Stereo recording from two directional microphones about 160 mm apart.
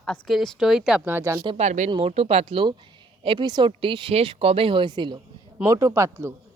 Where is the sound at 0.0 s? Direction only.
5° left (ahead or behind); by 1.4 s 15° right (ahead or behind).